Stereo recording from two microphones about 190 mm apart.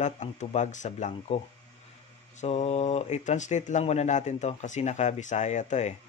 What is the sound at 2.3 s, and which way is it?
Speech, 35° left (ahead or behind).